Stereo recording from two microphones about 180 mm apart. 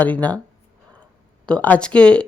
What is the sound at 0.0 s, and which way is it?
Speech, 10° left (ahead or behind).